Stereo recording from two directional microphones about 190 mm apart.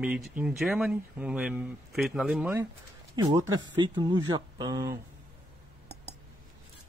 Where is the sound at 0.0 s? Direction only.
5° right (ahead or behind).